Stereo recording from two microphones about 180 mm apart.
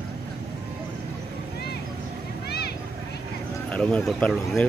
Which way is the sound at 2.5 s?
60° left (ahead or behind).